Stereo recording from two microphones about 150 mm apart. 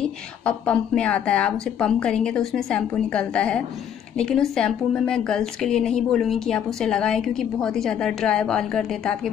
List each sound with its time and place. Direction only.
0.0 s a woman's voice: 5° left (ahead or behind)